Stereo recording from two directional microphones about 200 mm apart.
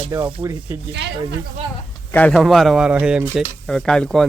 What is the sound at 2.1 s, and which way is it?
Speech, 5° left (ahead or behind).